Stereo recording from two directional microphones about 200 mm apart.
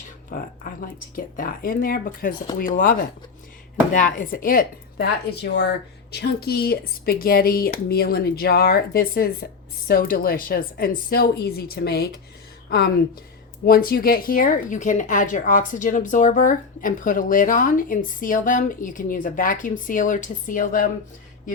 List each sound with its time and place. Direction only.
0.3 s speech: 45° left (ahead or behind)
13.7 s speech: 50° left (ahead or behind)